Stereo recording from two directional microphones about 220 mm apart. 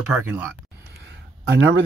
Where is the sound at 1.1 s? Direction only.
55° right (ahead or behind).